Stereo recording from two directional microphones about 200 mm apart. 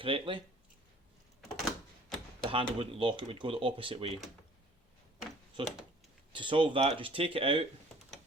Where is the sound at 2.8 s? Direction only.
25° right (ahead or behind).